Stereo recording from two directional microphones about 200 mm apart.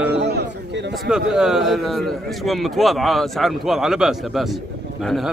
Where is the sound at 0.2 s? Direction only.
55° right (ahead or behind).